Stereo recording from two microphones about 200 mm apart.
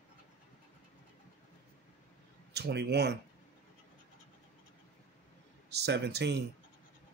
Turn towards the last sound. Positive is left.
turn(degrees=-55)  # may be behind; listen again after turning